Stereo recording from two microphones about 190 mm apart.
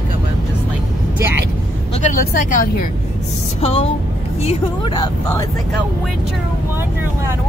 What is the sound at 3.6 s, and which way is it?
Speech, 30° left (ahead or behind).